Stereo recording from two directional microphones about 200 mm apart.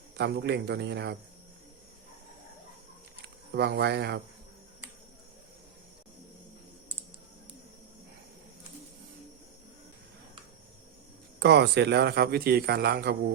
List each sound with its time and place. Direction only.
0.2 s a man's voice: 55° right (ahead or behind)
3.5 s a man's voice: 55° right (ahead or behind)
11.3 s speech: 55° right (ahead or behind)